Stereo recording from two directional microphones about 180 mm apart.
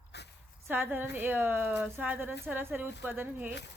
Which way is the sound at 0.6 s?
10° right (ahead or behind).